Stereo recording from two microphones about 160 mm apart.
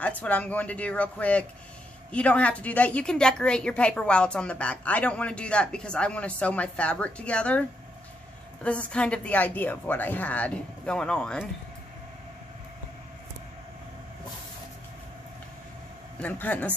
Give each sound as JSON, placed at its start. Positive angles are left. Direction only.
{"t": 0.0, "sound": "a woman's voice", "side_deg": 10}
{"t": 8.6, "sound": "a woman's voice", "side_deg": 10}
{"t": 16.2, "sound": "a woman's voice", "side_deg": 10}